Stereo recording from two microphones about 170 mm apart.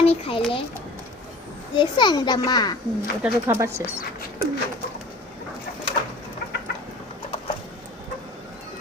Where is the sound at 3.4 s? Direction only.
15° right (ahead or behind).